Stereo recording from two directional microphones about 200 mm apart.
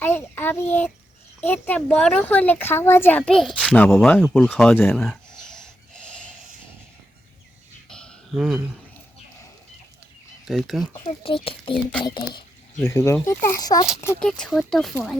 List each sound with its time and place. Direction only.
0.0 s child singing: 10° left (ahead or behind)
1.4 s speech: 10° left (ahead or behind)
4.7 s speech: 10° left (ahead or behind)
4.9 s a sound: centre (ahead or behind)
7.9 s a sound: 5° left (ahead or behind)
10.4 s speech: centre (ahead or behind)
10.9 s speech: 25° left (ahead or behind)
11.7 s speech: centre (ahead or behind)
12.0 s speech: 20° left (ahead or behind)
14.0 s speech: 10° left (ahead or behind)